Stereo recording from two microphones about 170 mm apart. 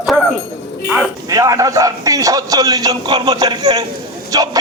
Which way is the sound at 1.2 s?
20° right (ahead or behind).